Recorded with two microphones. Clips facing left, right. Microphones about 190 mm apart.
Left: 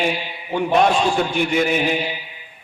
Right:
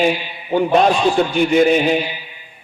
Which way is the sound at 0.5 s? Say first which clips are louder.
Right 3 dB; 35° right (ahead or behind).